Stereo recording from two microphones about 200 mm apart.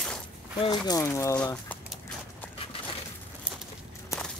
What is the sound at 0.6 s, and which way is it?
Speech, 20° left (ahead or behind).